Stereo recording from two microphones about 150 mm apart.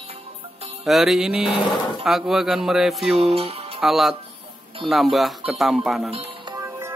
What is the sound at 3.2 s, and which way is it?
Speech, 40° right (ahead or behind).